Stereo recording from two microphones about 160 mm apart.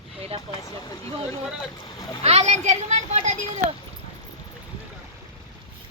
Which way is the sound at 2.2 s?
40° right (ahead or behind).